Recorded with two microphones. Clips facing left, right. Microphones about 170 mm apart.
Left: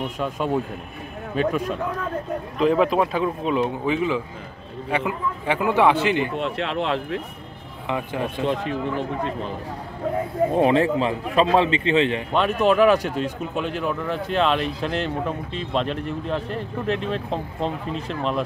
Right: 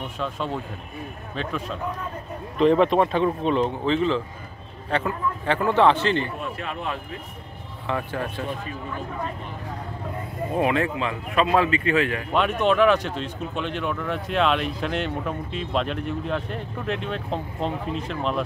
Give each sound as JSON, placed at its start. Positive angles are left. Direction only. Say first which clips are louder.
{"t": 0.2, "sound": "a man's voice", "louder": "left 4 dB", "side_deg": 10}
{"t": 2.6, "sound": "a man's voice", "louder": "right 1 dB", "side_deg": 5}
{"t": 6.3, "sound": "speech", "louder": "left 6 dB", "side_deg": 90}
{"t": 7.9, "sound": "a man's voice", "louder": "left 2 dB", "side_deg": 15}
{"t": 10.5, "sound": "a man's voice", "louder": "left 3 dB", "side_deg": 30}
{"t": 12.3, "sound": "speech", "louder": "left 2 dB", "side_deg": 0}